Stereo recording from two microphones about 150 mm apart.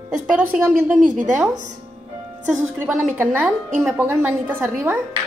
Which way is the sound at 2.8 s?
10° right (ahead or behind).